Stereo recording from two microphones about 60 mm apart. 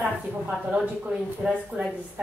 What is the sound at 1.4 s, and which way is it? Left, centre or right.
Speech, centre.